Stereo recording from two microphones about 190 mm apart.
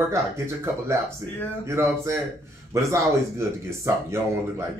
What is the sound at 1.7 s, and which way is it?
A man's voice, 15° right (ahead or behind).